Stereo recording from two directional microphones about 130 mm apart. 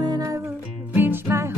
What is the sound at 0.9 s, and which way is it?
Music, 15° right (ahead or behind).